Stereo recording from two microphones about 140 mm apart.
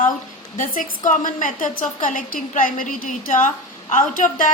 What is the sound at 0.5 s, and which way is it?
A woman's voice, 75° left (ahead or behind).